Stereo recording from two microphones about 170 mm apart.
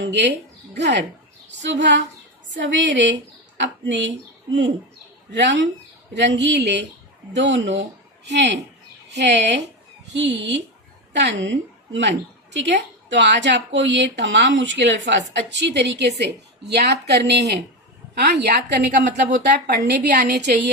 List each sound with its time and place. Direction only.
0.0 s a woman's voice: 90° right
1.6 s a woman's voice: 90° right
5.3 s a woman's voice: 90° right; by 18.9 s 75° right (ahead or behind)
18.9 s speech: 50° right (ahead or behind)
19.5 s a woman's voice: 75° right (ahead or behind)